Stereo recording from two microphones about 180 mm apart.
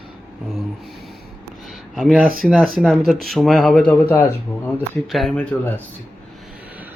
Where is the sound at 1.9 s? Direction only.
Centre (ahead or behind).